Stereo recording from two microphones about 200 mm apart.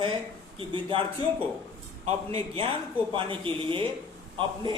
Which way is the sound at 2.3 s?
25° right (ahead or behind).